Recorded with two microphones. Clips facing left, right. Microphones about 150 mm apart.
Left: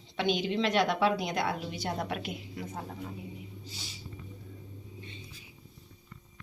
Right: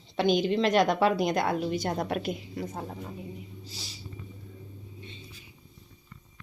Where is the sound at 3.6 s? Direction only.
35° right (ahead or behind).